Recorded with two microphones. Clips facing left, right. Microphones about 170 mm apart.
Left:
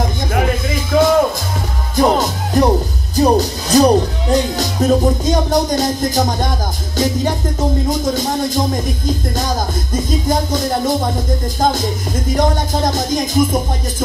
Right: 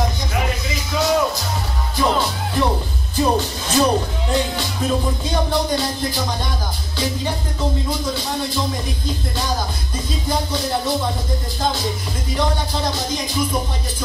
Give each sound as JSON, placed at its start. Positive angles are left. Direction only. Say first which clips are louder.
{"t": 0.3, "sound": "music", "louder": "left 6 dB", "side_deg": 50}
{"t": 7.9, "sound": "music", "louder": "left 6 dB", "side_deg": 45}